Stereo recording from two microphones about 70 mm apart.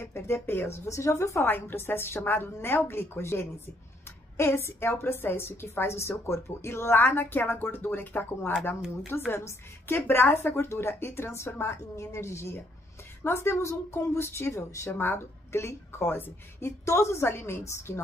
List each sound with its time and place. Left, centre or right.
0.0 s a woman's voice: left
0.9 s a woman's voice: left
1.4 s a woman's voice: left
15.0 s a woman's voice: left